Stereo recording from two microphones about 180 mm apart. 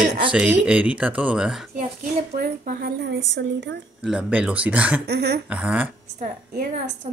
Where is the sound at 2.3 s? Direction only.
60° right (ahead or behind); by 3.7 s 75° right (ahead or behind).